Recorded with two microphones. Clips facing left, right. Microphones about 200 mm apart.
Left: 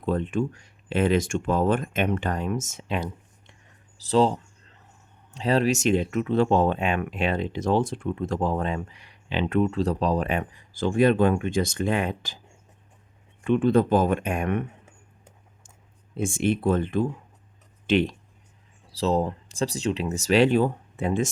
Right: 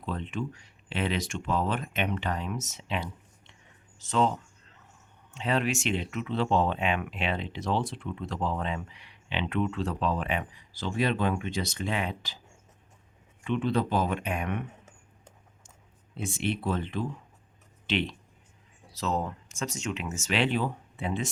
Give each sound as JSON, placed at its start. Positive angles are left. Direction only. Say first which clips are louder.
{"t": 0.0, "sound": "speech", "louder": "left 8 dB", "side_deg": 45}
{"t": 3.9, "sound": "speech", "louder": "left 6 dB", "side_deg": 35}
{"t": 13.4, "sound": "speech", "louder": "left 7 dB", "side_deg": 50}
{"t": 16.1, "sound": "speech", "louder": "left 7 dB", "side_deg": 45}
{"t": 18.9, "sound": "speech", "louder": "left 7 dB", "side_deg": 30}